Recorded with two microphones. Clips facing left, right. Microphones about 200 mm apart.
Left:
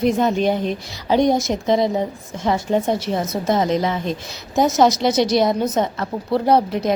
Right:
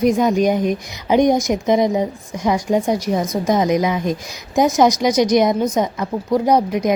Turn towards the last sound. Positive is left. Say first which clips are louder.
# right 1 dB
turn(degrees=-15)  # may be behind; listen again after turning